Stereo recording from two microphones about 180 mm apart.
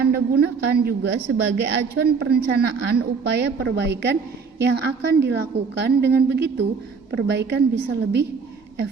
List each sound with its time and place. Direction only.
0.0 s a woman's voice: 60° right (ahead or behind)